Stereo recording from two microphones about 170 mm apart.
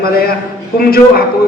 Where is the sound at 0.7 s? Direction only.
65° left (ahead or behind).